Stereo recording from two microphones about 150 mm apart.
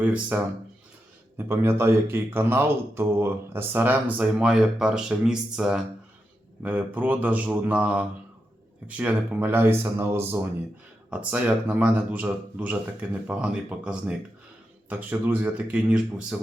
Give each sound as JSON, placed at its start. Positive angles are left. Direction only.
{"t": 0.0, "sound": "speech", "side_deg": -10}
{"t": 1.4, "sound": "speech", "side_deg": -15}